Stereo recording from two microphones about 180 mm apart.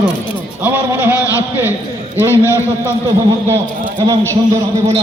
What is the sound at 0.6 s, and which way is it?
Speech, 10° right (ahead or behind).